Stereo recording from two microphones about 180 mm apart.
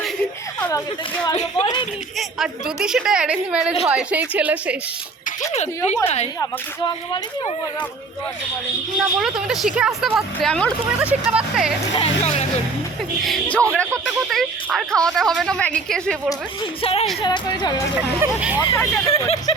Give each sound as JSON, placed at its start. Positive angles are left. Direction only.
{"t": 1.4, "sound": "speech", "side_deg": 40}
{"t": 2.1, "sound": "a woman's voice", "side_deg": 0}
{"t": 5.5, "sound": "speech", "side_deg": 35}
{"t": 6.4, "sound": "speech", "side_deg": 25}
{"t": 9.0, "sound": "a woman's voice", "side_deg": 0}
{"t": 11.0, "sound": "a woman's voice", "side_deg": -10}
{"t": 11.9, "sound": "speech", "side_deg": 35}
{"t": 13.2, "sound": "a woman's voice", "side_deg": 0}
{"t": 16.8, "sound": "speech", "side_deg": 30}
{"t": 18.2, "sound": "a woman's voice", "side_deg": -10}
{"t": 19.0, "sound": "speech", "side_deg": 35}